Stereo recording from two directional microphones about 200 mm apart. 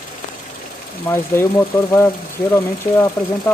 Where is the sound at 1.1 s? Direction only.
10° left (ahead or behind).